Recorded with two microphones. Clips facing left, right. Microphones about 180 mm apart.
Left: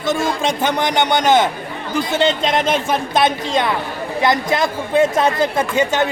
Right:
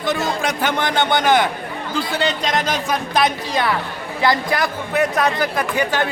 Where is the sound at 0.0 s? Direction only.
20° left (ahead or behind).